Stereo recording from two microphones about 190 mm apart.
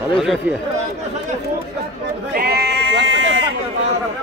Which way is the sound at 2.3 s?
55° right (ahead or behind).